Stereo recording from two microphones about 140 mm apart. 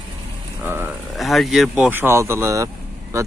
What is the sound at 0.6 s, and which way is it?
Speech, 15° right (ahead or behind).